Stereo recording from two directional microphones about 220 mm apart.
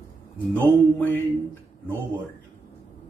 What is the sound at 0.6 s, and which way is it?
Speech, 10° left (ahead or behind).